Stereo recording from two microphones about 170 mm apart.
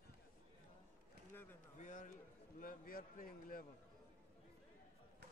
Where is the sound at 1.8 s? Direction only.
50° left (ahead or behind).